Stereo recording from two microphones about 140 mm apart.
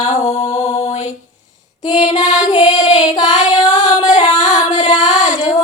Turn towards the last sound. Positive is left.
turn(degrees=30)  # may be behind; listen again after turning